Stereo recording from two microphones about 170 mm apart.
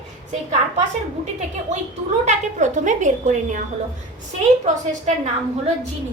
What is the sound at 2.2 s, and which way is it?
A woman's voice, 45° right (ahead or behind).